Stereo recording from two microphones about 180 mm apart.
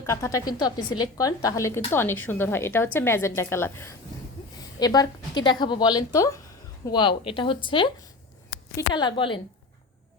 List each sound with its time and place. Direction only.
0.0 s a woman's voice: 15° left (ahead or behind)